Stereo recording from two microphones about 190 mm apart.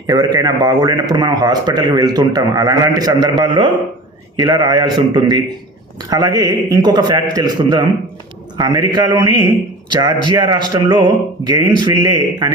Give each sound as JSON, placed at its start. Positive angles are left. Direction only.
{"t": 0.1, "sound": "a man's voice", "side_deg": -20}